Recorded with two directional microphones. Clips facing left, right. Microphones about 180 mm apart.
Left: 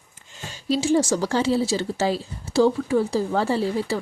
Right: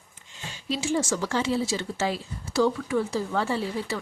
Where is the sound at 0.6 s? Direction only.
35° left (ahead or behind).